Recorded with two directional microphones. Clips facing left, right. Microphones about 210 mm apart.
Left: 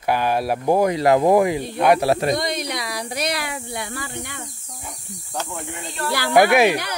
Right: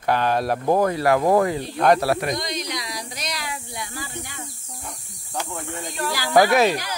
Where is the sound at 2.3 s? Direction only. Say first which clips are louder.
Left 4 dB; 60° left (ahead or behind).